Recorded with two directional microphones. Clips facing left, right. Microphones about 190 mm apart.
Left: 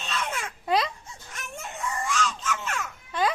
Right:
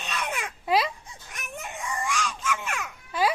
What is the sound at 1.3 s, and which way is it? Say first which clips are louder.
Baby cry: right 1 dB; 15° right (ahead or behind).